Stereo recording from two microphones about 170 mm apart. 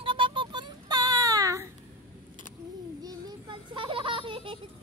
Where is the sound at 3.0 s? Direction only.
25° right (ahead or behind).